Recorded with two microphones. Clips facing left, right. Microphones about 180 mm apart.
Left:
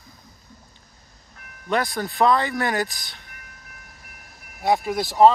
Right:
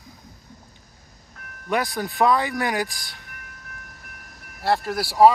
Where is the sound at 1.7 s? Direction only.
10° right (ahead or behind).